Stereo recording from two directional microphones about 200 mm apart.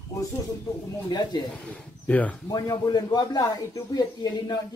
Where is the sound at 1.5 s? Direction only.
5° left (ahead or behind).